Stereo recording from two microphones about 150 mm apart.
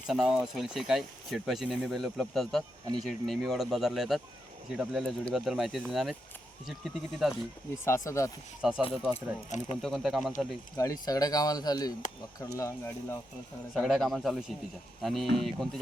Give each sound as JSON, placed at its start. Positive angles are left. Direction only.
{"t": 0.1, "sound": "speech", "side_deg": -5}
{"t": 7.9, "sound": "speech", "side_deg": 20}
{"t": 8.6, "sound": "speech", "side_deg": -5}
{"t": 9.1, "sound": "speech", "side_deg": 45}
{"t": 9.8, "sound": "speech", "side_deg": 0}
{"t": 11.0, "sound": "speech", "side_deg": 25}
{"t": 13.7, "sound": "speech", "side_deg": 0}